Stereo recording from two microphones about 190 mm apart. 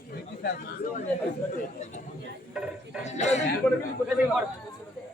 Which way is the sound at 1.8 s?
40° left (ahead or behind).